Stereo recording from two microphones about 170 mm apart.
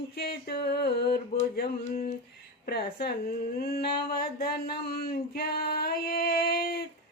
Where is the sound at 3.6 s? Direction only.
65° left (ahead or behind).